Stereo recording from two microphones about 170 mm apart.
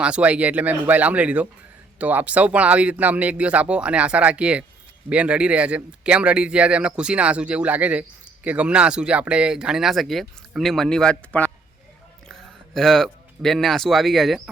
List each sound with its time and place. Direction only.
0.0 s speech: 5° right (ahead or behind)